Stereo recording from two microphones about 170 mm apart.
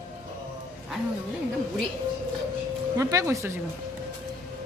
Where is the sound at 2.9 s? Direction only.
20° right (ahead or behind).